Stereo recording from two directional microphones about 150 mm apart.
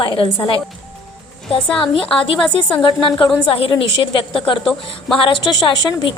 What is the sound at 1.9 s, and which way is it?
A woman's voice, 40° left (ahead or behind).